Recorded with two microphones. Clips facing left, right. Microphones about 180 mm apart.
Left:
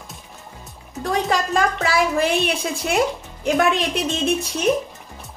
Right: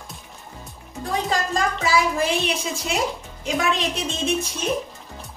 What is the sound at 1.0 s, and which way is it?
A woman's voice, 70° left (ahead or behind).